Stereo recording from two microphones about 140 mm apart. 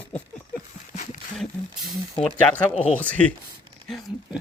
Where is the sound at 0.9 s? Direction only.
60° left (ahead or behind).